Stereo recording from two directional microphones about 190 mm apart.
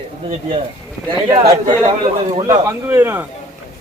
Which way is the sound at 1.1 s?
20° right (ahead or behind).